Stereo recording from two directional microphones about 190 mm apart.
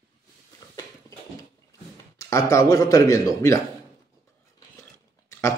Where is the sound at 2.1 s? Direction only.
15° left (ahead or behind).